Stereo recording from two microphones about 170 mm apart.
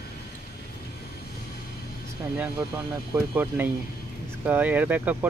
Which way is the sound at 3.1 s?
15° right (ahead or behind).